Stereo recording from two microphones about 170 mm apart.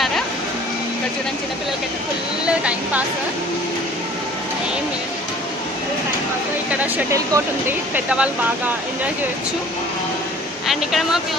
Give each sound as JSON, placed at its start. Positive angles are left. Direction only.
{"t": 2.4, "sound": "speech", "side_deg": -5}
{"t": 6.7, "sound": "speech", "side_deg": -10}
{"t": 10.7, "sound": "speech", "side_deg": 0}